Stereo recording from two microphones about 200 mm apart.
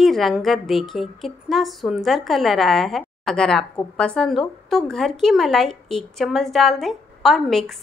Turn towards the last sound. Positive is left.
turn(degrees=0)  # may be behind; listen again after turning